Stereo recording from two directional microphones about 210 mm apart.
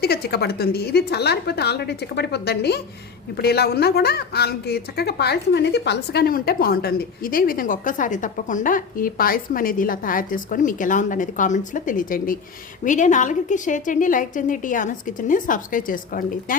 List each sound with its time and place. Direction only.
0.0 s a woman's voice: 50° left (ahead or behind)